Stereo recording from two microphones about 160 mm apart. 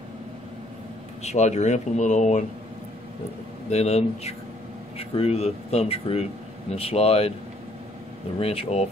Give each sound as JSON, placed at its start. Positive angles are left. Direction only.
{"t": 1.2, "sound": "speech", "side_deg": 45}
{"t": 3.7, "sound": "speech", "side_deg": 45}
{"t": 8.4, "sound": "speech", "side_deg": 40}